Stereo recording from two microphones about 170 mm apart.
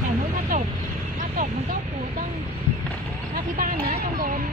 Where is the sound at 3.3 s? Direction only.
60° right (ahead or behind).